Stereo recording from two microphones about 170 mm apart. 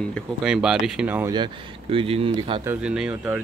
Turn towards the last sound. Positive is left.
turn(degrees=-5)  # may be behind; listen again after turning